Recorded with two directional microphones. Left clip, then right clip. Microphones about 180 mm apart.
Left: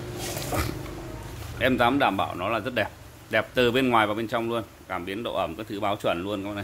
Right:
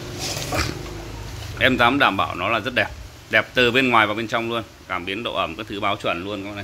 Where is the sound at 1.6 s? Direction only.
5° left (ahead or behind).